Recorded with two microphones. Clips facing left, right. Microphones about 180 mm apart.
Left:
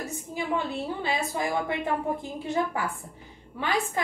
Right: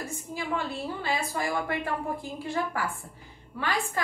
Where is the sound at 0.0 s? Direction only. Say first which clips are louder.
Left 2 dB; 20° left (ahead or behind).